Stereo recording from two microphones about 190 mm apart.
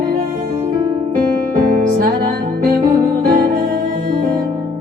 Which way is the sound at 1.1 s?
45° right (ahead or behind).